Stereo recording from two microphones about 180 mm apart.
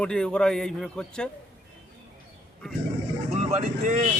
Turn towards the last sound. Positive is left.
turn(degrees=-40)  # may be behind; listen again after turning